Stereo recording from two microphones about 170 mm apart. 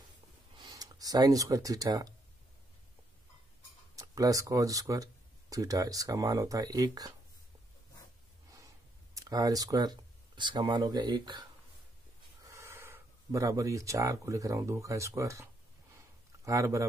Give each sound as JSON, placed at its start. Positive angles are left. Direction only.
{"t": 0.6, "sound": "speech", "side_deg": -25}
{"t": 3.9, "sound": "speech", "side_deg": -20}
{"t": 9.1, "sound": "speech", "side_deg": -20}
{"t": 12.4, "sound": "speech", "side_deg": -15}
{"t": 16.0, "sound": "a sound", "side_deg": -20}